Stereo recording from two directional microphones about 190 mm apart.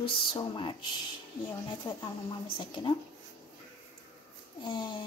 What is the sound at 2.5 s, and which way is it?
Speech, 25° left (ahead or behind).